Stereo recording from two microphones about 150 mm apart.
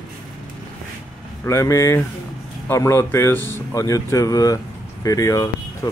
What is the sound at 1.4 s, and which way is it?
Speech, 20° left (ahead or behind).